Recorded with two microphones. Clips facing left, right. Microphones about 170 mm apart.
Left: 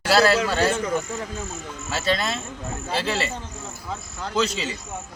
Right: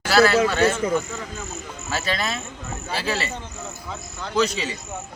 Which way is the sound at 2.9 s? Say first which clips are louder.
Left 1 dB; 30° left (ahead or behind).